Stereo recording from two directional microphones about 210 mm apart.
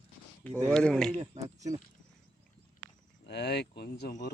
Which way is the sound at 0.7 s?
5° left (ahead or behind).